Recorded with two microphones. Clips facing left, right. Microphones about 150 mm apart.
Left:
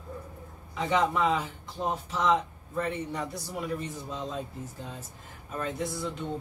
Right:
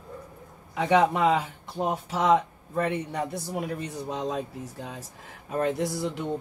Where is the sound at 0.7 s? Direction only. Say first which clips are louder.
Right 4 dB; 65° right (ahead or behind).